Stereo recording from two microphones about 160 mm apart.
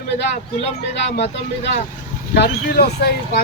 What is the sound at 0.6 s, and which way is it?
Speech, 90° left.